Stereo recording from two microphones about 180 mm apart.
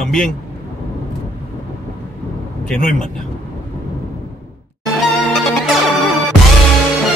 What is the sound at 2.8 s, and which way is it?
Speech, 45° left (ahead or behind).